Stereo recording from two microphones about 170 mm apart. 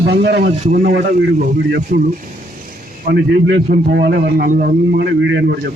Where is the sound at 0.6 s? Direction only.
60° right (ahead or behind).